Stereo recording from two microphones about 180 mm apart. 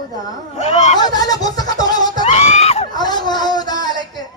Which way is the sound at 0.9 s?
20° left (ahead or behind).